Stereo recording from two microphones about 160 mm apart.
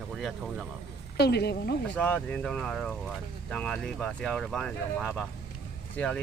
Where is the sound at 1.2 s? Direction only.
90° left.